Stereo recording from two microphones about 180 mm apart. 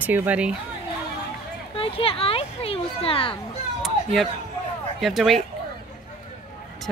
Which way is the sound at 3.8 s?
Centre (ahead or behind).